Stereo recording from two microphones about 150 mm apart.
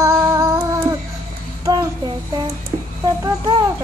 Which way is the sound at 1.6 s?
20° right (ahead or behind).